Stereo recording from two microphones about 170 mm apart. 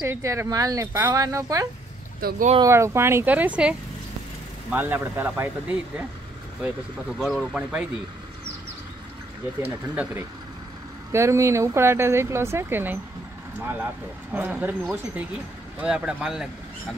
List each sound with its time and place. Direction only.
0.0 s speech: 15° right (ahead or behind)
2.2 s speech: 55° right (ahead or behind)
2.6 s speech: 15° right (ahead or behind)
9.6 s speech: 10° right (ahead or behind)
14.3 s speech: 10° right (ahead or behind)